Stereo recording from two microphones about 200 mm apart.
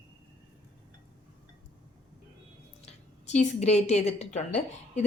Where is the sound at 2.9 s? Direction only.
35° left (ahead or behind).